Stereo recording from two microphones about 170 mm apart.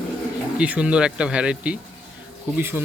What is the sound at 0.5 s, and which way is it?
Speech, 5° right (ahead or behind).